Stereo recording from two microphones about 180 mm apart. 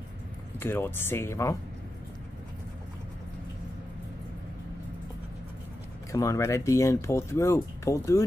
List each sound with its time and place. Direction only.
0.6 s speech: 10° left (ahead or behind)
6.1 s speech: 15° left (ahead or behind)